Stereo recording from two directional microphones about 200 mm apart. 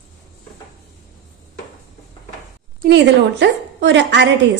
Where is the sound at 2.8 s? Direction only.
60° right (ahead or behind).